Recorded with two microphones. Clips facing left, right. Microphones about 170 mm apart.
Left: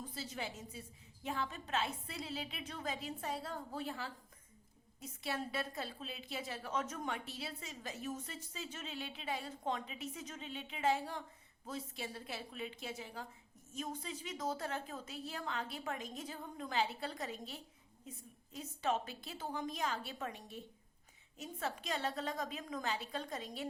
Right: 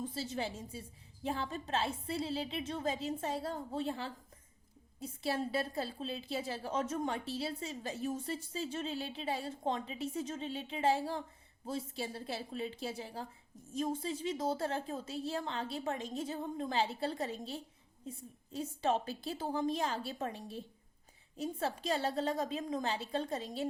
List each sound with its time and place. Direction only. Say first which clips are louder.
0.0 s a woman's voice: right 6 dB; 30° right (ahead or behind)